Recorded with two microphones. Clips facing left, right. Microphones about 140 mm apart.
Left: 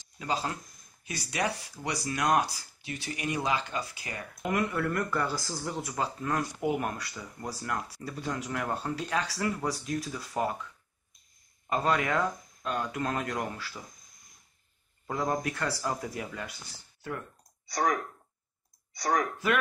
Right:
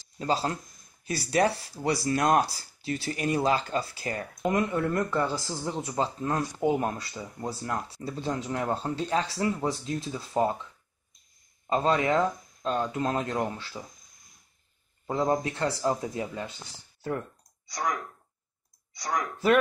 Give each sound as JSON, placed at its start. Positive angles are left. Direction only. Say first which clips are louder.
{"t": 0.2, "sound": "speech", "louder": "right 4 dB", "side_deg": -35}
{"t": 4.5, "sound": "speech", "louder": "right 3 dB", "side_deg": -25}
{"t": 11.7, "sound": "speech", "louder": "right 4 dB", "side_deg": -25}
{"t": 15.0, "sound": "speech", "louder": "right 4 dB", "side_deg": -25}